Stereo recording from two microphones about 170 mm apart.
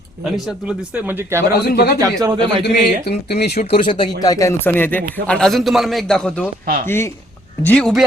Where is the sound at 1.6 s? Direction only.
65° left (ahead or behind).